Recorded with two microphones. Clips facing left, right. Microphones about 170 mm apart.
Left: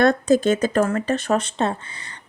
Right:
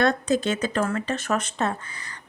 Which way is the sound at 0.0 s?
45° left (ahead or behind).